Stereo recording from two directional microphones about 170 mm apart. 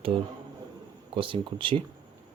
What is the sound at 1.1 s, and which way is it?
Speech, 30° right (ahead or behind).